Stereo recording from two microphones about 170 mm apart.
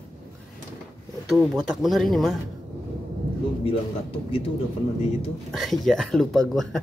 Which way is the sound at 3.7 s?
35° left (ahead or behind).